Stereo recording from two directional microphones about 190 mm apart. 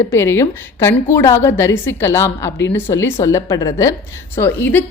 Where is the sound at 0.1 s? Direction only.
15° left (ahead or behind).